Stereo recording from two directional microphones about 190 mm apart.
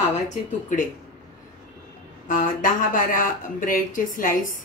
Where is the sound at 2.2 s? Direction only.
45° left (ahead or behind).